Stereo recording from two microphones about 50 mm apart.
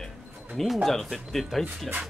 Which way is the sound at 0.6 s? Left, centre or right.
Centre.